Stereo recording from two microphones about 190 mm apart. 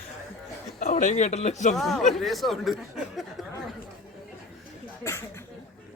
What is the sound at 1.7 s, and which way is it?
Speech, centre (ahead or behind).